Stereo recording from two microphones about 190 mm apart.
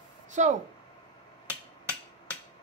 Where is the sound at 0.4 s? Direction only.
40° right (ahead or behind).